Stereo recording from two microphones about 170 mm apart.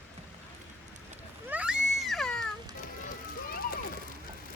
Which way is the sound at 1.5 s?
5° right (ahead or behind).